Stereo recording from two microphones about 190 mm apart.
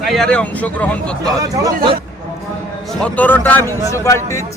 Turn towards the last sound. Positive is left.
turn(degrees=15)  # may be behind; listen again after turning